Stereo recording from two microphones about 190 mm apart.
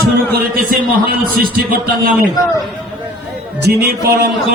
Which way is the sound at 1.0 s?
50° right (ahead or behind).